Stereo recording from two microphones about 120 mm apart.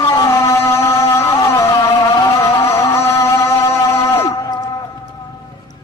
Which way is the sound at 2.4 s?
25° left (ahead or behind).